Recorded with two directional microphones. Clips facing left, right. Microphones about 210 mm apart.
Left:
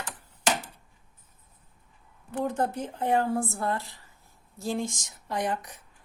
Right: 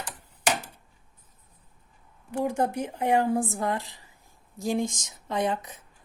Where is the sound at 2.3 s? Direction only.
10° right (ahead or behind).